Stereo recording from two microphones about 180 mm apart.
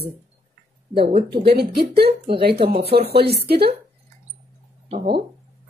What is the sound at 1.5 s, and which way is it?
Speech, 60° right (ahead or behind).